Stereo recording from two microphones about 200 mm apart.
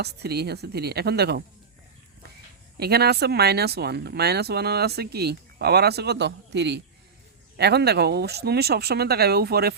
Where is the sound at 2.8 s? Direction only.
55° right (ahead or behind).